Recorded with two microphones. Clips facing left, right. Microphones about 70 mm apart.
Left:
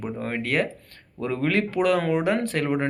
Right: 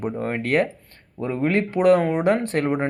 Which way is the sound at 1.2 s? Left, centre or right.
Right.